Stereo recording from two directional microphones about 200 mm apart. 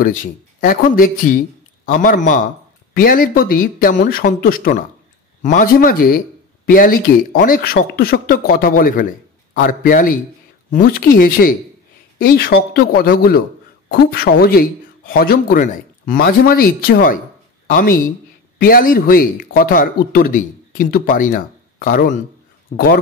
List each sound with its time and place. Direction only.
0.0 s speech: 40° left (ahead or behind)